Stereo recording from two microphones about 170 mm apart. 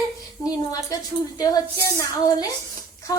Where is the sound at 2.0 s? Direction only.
20° left (ahead or behind).